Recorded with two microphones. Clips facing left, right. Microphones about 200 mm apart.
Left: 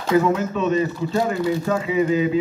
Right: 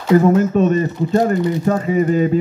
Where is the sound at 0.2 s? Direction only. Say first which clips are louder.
Right 7 dB; 45° right (ahead or behind).